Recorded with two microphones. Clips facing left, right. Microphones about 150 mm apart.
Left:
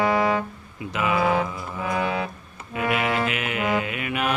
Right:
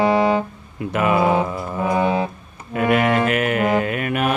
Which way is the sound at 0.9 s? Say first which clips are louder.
Right 5 dB; 50° right (ahead or behind).